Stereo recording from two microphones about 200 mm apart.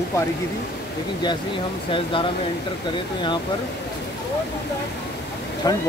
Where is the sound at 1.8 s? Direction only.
25° left (ahead or behind).